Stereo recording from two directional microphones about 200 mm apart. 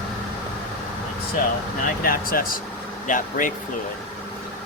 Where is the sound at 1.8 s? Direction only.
45° left (ahead or behind).